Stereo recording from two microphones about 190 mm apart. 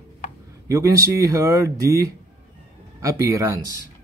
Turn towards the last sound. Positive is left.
turn(degrees=-15)  # may be behind; listen again after turning